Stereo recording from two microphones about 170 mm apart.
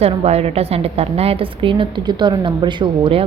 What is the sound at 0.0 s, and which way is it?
A woman's voice, 35° right (ahead or behind).